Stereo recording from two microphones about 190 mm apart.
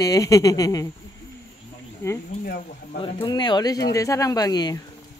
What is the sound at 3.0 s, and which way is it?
Speech, 25° left (ahead or behind).